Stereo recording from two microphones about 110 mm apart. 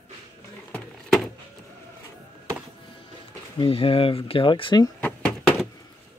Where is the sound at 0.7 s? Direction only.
Centre (ahead or behind).